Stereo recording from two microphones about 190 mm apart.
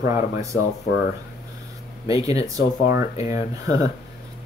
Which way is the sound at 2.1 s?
20° right (ahead or behind).